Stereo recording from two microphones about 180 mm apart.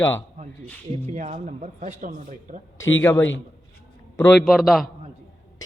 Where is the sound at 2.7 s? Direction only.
90° left.